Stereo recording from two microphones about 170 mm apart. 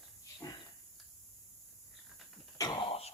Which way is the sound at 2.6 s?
20° left (ahead or behind).